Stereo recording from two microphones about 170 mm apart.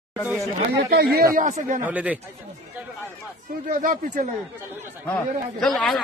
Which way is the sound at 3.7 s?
50° right (ahead or behind).